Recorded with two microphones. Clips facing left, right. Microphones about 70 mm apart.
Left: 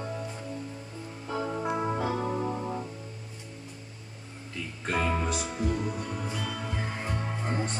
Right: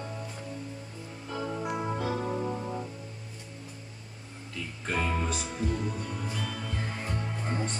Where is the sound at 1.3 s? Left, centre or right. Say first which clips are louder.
Left 3 dB; centre.